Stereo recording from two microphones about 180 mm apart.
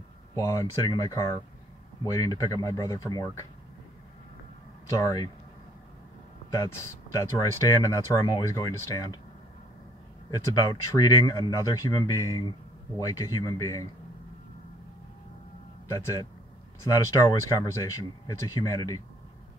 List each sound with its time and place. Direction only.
0.4 s speech: 15° left (ahead or behind)
4.9 s speech: 20° left (ahead or behind)
6.5 s speech: 15° left (ahead or behind)
10.3 s speech: 20° left (ahead or behind)
15.9 s speech: 15° left (ahead or behind)